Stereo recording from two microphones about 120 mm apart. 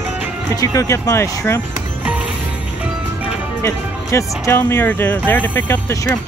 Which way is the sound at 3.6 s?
25° left (ahead or behind).